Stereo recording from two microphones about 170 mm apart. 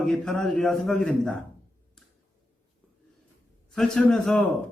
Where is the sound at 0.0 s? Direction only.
5° left (ahead or behind).